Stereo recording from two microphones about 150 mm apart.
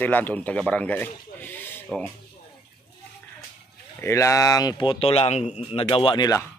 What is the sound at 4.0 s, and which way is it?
Speech, 20° left (ahead or behind).